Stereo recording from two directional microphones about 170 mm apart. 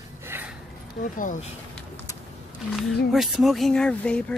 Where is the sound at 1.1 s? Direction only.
50° left (ahead or behind).